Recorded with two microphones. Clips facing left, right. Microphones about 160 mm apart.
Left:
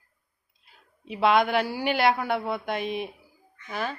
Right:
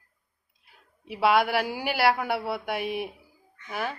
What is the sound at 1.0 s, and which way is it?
Speech, 10° right (ahead or behind).